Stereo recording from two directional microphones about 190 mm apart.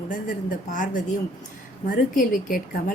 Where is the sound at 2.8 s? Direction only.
45° left (ahead or behind).